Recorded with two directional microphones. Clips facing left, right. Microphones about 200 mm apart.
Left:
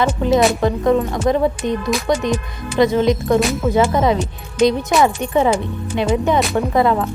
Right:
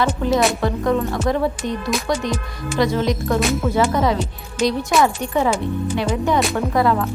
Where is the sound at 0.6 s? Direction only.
20° left (ahead or behind).